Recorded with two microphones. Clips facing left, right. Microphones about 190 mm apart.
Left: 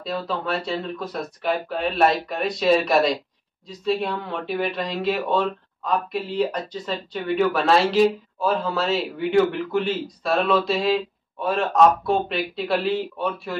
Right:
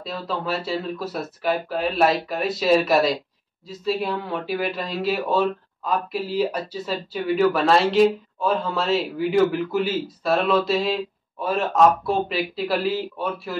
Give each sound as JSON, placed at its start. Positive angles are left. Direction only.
{"t": 0.0, "sound": "speech", "side_deg": 0}